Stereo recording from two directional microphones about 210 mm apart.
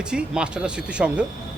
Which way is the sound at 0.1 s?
5° right (ahead or behind).